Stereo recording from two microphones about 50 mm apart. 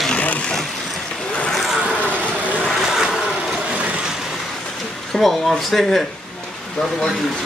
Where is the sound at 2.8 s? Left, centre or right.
Centre.